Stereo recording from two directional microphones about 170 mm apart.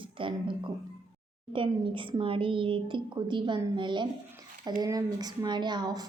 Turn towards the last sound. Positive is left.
turn(degrees=-25)  # may be behind; listen again after turning